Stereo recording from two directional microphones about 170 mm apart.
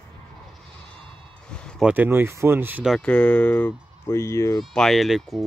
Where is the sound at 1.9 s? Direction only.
10° right (ahead or behind).